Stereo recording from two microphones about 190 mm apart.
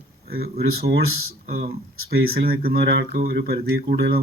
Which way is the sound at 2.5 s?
50° right (ahead or behind).